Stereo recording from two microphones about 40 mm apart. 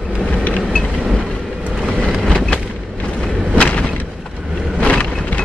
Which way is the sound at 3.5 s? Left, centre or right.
Left.